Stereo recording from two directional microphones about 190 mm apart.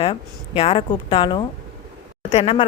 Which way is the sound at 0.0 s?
30° left (ahead or behind).